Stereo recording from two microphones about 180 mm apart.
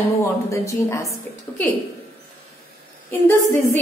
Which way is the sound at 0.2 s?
15° left (ahead or behind).